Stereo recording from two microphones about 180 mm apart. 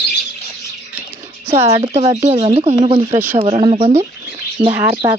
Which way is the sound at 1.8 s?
35° right (ahead or behind).